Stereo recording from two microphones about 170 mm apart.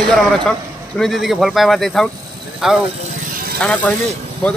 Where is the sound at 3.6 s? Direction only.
5° left (ahead or behind).